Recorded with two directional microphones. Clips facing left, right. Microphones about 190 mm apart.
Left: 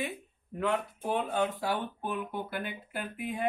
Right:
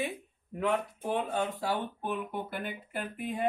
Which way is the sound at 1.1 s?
5° right (ahead or behind).